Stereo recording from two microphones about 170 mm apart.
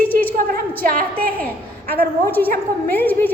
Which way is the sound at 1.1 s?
10° left (ahead or behind).